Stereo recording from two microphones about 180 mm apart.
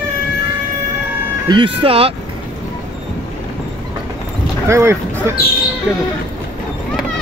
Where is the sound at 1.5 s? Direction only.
30° right (ahead or behind).